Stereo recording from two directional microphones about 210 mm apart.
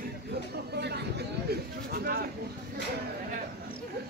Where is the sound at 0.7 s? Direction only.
50° right (ahead or behind).